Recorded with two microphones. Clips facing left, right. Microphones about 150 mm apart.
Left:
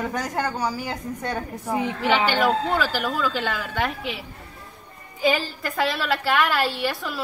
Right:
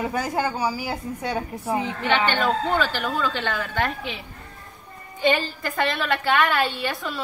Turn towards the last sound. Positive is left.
turn(degrees=5)  # may be behind; listen again after turning